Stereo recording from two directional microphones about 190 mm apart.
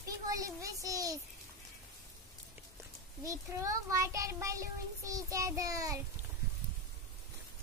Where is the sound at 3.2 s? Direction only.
15° right (ahead or behind).